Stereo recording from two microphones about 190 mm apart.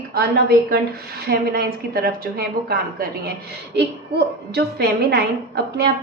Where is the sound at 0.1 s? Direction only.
55° right (ahead or behind).